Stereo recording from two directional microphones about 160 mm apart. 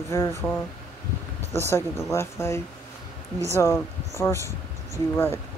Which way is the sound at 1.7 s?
15° left (ahead or behind).